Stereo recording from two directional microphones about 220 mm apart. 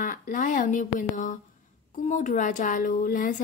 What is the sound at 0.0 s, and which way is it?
A woman's voice, 35° left (ahead or behind).